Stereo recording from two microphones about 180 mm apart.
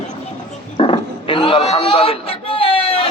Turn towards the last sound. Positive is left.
turn(degrees=30)  # may be behind; listen again after turning